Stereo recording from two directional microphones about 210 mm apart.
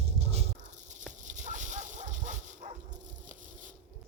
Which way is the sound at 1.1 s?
35° right (ahead or behind).